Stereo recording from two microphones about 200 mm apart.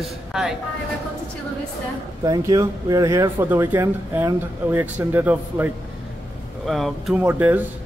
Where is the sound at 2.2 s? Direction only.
15° right (ahead or behind).